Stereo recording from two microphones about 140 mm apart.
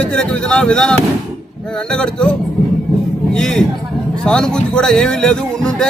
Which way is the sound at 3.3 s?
5° left (ahead or behind).